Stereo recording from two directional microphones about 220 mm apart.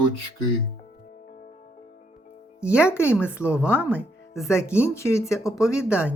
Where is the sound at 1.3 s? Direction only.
40° left (ahead or behind).